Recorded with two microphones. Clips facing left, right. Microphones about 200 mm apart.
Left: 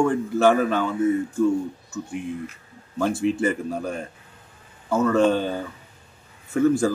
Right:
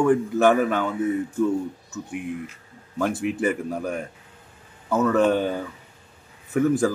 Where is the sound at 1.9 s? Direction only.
15° right (ahead or behind).